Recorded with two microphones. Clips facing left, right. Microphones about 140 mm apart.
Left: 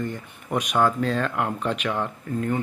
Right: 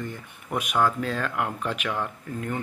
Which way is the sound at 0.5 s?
20° left (ahead or behind).